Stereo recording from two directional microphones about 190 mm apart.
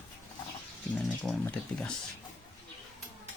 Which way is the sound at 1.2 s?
5° left (ahead or behind).